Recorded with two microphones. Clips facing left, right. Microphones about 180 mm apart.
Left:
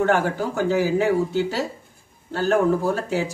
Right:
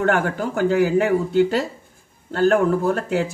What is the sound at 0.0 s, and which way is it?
Speech, 60° right (ahead or behind).